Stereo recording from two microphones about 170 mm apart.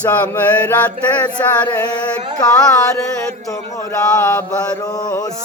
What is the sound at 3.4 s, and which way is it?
Chant, 20° left (ahead or behind).